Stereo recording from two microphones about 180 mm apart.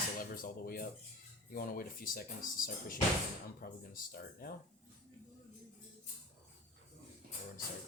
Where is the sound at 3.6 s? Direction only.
55° left (ahead or behind).